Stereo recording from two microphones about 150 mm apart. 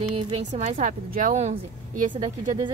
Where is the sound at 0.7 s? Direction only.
60° right (ahead or behind).